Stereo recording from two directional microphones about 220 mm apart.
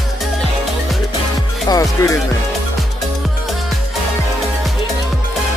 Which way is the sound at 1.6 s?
15° left (ahead or behind).